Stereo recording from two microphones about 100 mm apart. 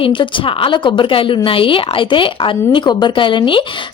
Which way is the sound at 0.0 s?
60° left (ahead or behind).